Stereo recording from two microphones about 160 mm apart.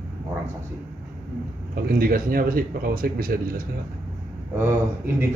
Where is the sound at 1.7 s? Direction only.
65° right (ahead or behind).